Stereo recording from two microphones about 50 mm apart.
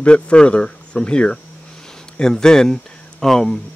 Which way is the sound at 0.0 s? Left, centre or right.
Left.